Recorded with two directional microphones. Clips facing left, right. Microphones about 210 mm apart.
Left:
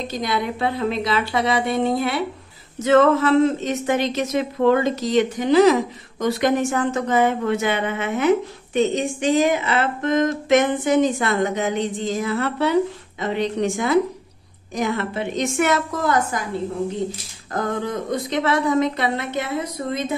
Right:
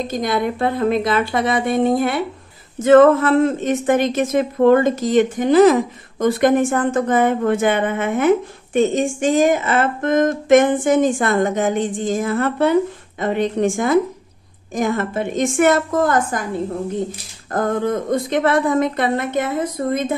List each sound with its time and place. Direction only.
0.0 s a woman's voice: 50° right (ahead or behind)
17.5 s a woman's voice: 50° right (ahead or behind)